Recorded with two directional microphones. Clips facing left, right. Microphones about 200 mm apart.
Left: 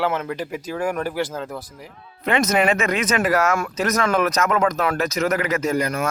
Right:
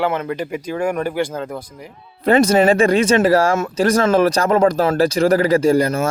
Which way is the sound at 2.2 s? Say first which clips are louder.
Right 6 dB; 35° right (ahead or behind).